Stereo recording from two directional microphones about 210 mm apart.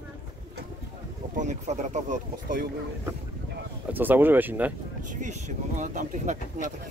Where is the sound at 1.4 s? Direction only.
35° right (ahead or behind).